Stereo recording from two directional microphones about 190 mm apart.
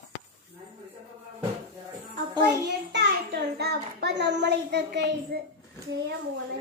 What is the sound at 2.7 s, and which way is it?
Child singing, 60° right (ahead or behind).